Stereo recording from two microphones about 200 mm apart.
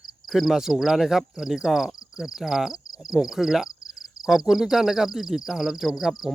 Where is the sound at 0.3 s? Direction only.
Centre (ahead or behind).